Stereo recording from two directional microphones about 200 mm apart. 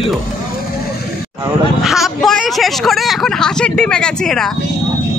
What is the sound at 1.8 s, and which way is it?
Vehicle, centre (ahead or behind).